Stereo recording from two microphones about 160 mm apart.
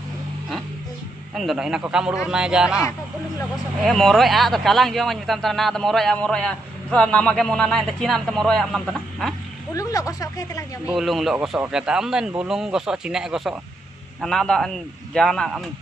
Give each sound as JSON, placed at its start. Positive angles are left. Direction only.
{"t": 1.3, "sound": "a man's voice", "side_deg": 0}
{"t": 3.8, "sound": "a man's voice", "side_deg": 0}
{"t": 9.8, "sound": "speech", "side_deg": 20}
{"t": 10.9, "sound": "a man's voice", "side_deg": 0}